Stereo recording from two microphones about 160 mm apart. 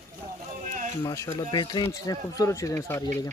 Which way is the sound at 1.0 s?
20° left (ahead or behind).